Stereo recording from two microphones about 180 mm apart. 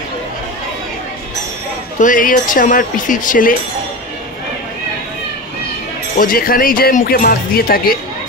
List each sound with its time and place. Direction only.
2.0 s speech: 45° left (ahead or behind)
6.1 s speech: 50° left (ahead or behind)